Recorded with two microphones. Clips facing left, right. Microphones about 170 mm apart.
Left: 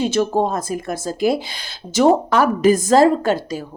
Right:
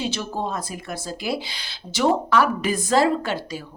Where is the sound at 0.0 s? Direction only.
50° left (ahead or behind).